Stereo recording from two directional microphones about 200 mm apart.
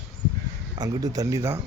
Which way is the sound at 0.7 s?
20° right (ahead or behind).